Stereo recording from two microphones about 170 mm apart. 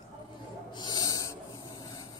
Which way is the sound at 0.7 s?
25° left (ahead or behind).